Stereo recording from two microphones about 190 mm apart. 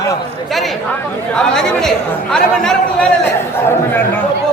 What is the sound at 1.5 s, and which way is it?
Speech, 5° left (ahead or behind).